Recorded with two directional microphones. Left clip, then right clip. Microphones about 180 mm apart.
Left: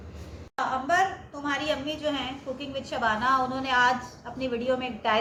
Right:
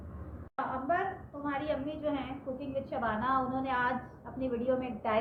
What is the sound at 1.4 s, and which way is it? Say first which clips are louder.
A woman's voice: left 6 dB; 20° left (ahead or behind).